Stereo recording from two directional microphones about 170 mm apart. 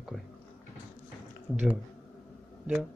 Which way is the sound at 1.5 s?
5° right (ahead or behind).